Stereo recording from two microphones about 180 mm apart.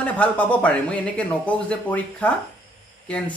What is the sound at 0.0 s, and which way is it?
Speech, 10° left (ahead or behind).